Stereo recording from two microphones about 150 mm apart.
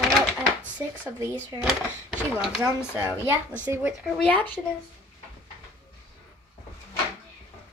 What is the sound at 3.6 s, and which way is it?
Speech, 10° right (ahead or behind).